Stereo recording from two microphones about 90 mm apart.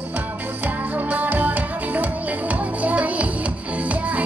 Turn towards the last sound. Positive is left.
turn(degrees=-15)  # may be behind; listen again after turning